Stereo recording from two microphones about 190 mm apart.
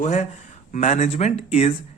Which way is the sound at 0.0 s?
40° left (ahead or behind).